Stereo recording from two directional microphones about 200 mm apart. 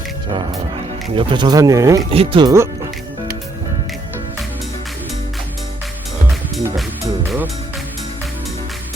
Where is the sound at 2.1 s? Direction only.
30° right (ahead or behind).